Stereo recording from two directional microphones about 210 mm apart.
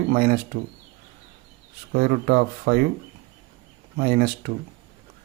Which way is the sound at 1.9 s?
45° right (ahead or behind).